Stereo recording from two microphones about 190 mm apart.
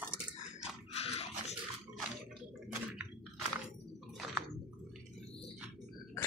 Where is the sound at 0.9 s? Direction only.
35° left (ahead or behind).